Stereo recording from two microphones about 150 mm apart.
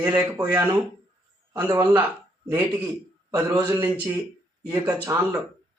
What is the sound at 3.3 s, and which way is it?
Speech, 20° right (ahead or behind).